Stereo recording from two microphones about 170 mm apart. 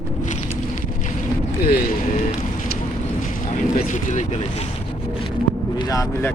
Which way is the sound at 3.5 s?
45° left (ahead or behind).